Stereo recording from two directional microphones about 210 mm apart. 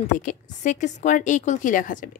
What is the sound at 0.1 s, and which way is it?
A woman's voice, 40° left (ahead or behind).